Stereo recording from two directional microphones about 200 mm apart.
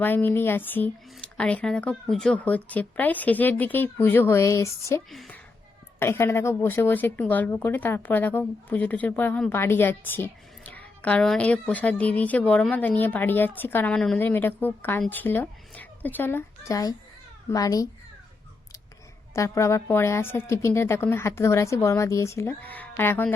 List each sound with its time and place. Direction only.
0.0 s a woman's voice: 10° left (ahead or behind)
19.3 s speech: 15° left (ahead or behind)